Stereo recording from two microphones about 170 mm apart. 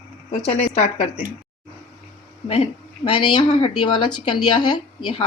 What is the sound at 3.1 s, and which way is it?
Speech, 30° left (ahead or behind).